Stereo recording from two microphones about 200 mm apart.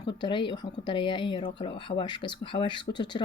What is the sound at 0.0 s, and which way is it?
Speech, 25° left (ahead or behind).